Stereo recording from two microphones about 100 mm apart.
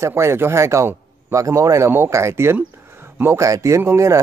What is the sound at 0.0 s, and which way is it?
A man's voice, 25° right (ahead or behind).